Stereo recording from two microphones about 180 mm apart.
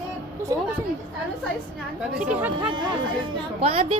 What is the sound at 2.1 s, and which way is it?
Chatter, 10° right (ahead or behind).